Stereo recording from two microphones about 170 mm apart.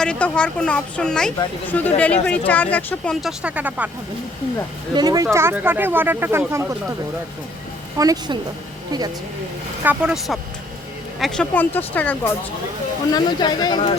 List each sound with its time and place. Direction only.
0.0 s speech: 5° left (ahead or behind)
4.9 s speech: 20° right (ahead or behind)
7.9 s speech: 20° right (ahead or behind)
9.8 s speech: 5° right (ahead or behind); by 12.3 s 10° left (ahead or behind)
13.1 s speech: 25° left (ahead or behind)